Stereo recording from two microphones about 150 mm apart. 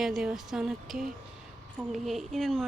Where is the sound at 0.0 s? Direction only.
5° right (ahead or behind).